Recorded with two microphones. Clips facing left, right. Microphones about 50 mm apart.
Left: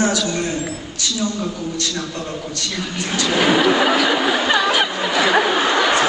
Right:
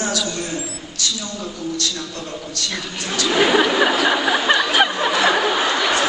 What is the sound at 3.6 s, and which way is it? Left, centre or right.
Speech, centre.